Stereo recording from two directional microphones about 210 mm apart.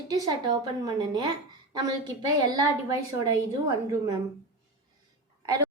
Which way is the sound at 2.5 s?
15° right (ahead or behind).